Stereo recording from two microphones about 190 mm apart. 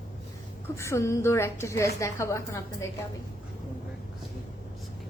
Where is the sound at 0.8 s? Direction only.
15° left (ahead or behind).